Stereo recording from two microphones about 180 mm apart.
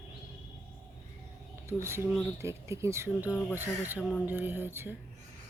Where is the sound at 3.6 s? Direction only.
10° right (ahead or behind).